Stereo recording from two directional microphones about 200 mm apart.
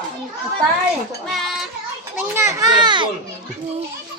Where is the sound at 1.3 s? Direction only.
Centre (ahead or behind).